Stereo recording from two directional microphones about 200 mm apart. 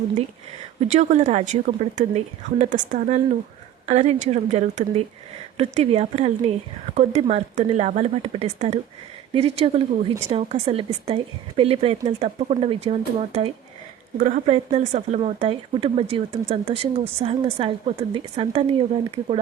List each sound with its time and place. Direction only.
0.8 s a woman's voice: 35° right (ahead or behind)